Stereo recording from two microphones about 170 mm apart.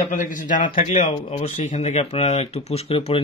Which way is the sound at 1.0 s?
35° left (ahead or behind).